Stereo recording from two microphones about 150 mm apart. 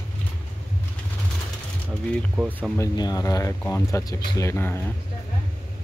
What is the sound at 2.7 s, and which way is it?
Speech, 25° left (ahead or behind).